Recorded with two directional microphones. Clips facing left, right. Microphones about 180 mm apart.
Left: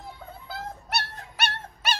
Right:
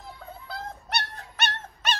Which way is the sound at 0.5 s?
5° left (ahead or behind).